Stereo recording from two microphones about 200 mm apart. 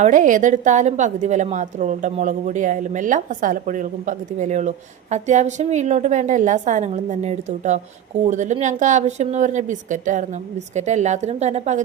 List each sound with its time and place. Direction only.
0.0 s a woman's voice: 40° right (ahead or behind)